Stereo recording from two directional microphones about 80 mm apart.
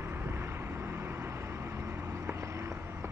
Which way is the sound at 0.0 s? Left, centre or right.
Right.